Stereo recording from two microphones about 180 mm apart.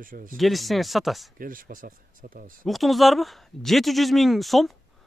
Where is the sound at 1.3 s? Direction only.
50° right (ahead or behind).